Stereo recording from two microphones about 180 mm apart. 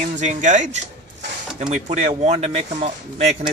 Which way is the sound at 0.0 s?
40° right (ahead or behind).